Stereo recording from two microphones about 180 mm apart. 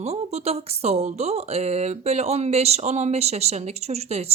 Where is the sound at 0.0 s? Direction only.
35° right (ahead or behind).